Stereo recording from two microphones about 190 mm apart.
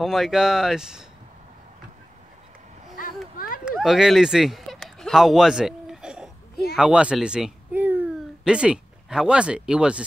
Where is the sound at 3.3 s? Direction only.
50° left (ahead or behind).